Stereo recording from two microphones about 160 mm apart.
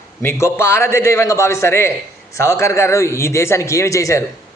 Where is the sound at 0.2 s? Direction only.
15° left (ahead or behind).